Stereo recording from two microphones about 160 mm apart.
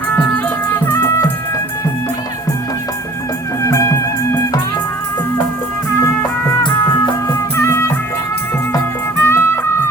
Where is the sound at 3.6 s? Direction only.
20° left (ahead or behind).